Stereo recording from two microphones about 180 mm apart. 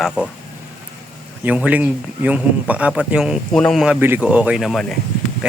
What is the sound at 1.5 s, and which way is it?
Speech, 10° right (ahead or behind).